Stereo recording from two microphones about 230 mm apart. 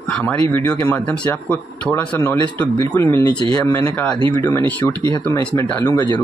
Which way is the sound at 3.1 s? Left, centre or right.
Right.